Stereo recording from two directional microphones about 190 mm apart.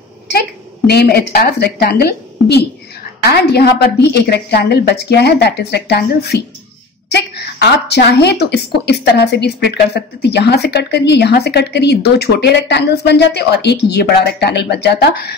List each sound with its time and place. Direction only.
0.8 s a woman's voice: 55° left (ahead or behind)